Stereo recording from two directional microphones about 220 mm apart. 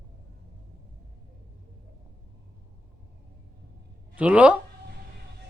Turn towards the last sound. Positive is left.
turn(degrees=-5)  # may be behind; listen again after turning